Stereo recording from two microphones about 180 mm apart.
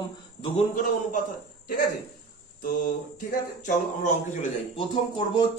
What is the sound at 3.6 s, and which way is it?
Speech, 45° left (ahead or behind).